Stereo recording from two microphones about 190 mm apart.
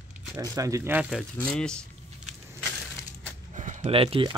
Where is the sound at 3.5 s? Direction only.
40° right (ahead or behind).